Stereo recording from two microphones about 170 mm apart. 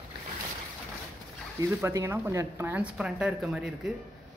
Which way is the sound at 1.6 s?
15° right (ahead or behind).